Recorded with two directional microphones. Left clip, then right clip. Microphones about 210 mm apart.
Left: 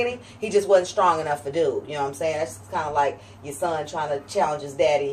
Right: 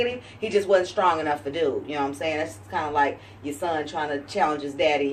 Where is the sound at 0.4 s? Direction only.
15° left (ahead or behind).